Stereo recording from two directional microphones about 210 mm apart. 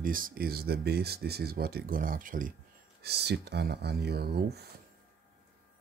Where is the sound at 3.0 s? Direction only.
50° right (ahead or behind).